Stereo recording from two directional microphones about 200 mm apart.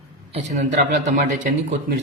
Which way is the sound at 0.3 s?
35° right (ahead or behind).